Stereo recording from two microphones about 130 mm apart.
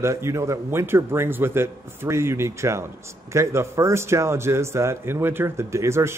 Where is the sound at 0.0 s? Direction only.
20° right (ahead or behind).